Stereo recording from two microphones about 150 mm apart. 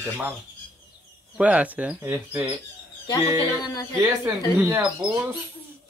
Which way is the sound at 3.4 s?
25° left (ahead or behind).